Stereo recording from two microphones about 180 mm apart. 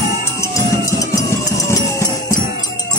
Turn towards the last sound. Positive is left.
turn(degrees=15)  # may be behind; listen again after turning